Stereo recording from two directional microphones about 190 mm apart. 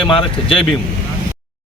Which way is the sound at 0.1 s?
30° left (ahead or behind).